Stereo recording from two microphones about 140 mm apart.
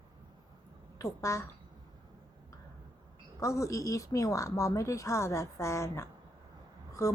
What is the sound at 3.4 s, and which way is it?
A woman's voice, 20° left (ahead or behind).